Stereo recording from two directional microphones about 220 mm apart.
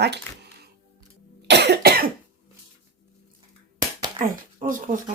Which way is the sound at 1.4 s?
50° right (ahead or behind).